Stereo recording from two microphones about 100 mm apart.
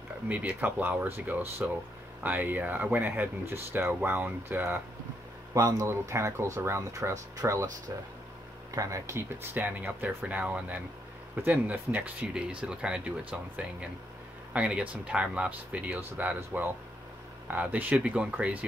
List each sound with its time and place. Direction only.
0.3 s speech: 15° right (ahead or behind)
5.5 s speech: 30° right (ahead or behind)
8.7 s speech: 30° right (ahead or behind); by 18.6 s 15° right (ahead or behind)